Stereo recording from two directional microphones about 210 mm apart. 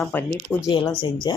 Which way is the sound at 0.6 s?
20° left (ahead or behind).